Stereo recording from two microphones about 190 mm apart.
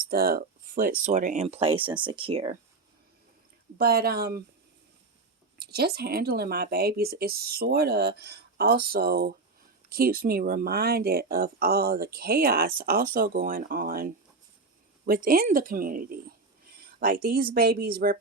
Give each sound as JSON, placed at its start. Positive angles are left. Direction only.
{"t": 0.1, "sound": "speech", "side_deg": -50}
{"t": 3.8, "sound": "speech", "side_deg": -55}
{"t": 5.5, "sound": "speech", "side_deg": -55}